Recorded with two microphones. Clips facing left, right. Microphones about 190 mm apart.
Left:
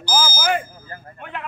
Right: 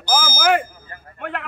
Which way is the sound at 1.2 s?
70° right (ahead or behind).